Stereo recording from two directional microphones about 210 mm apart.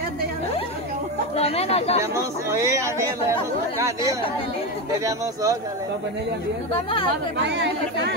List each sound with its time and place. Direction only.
1.3 s speech: 30° left (ahead or behind)
2.0 s speech: 15° right (ahead or behind)
7.3 s speech: 55° right (ahead or behind)